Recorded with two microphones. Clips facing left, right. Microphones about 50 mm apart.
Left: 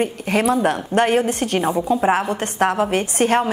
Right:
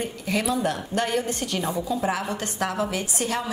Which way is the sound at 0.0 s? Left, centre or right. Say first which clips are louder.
Left 7 dB; left.